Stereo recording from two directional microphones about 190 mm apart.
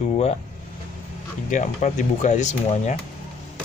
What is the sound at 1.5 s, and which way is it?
Speech, 40° left (ahead or behind).